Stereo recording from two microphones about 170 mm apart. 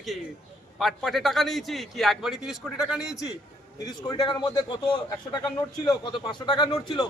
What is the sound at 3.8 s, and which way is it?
A man's voice, 25° left (ahead or behind).